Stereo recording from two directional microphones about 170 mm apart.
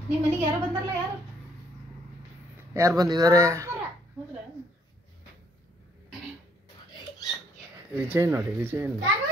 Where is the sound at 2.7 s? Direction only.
20° right (ahead or behind).